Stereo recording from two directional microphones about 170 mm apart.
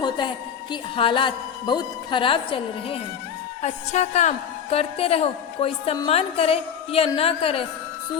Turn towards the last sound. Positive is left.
turn(degrees=35)  # may be behind; listen again after turning